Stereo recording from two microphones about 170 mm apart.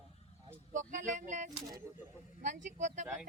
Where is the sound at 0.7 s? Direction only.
45° right (ahead or behind).